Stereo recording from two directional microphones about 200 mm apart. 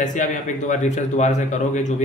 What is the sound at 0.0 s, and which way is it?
Speech, 40° left (ahead or behind).